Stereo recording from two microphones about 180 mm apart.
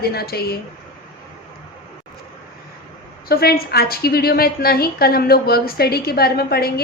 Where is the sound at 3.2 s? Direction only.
60° left (ahead or behind).